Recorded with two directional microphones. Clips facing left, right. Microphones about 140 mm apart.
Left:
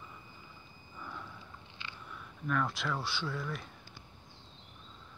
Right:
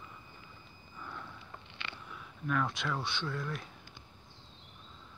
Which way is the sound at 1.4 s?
70° right (ahead or behind).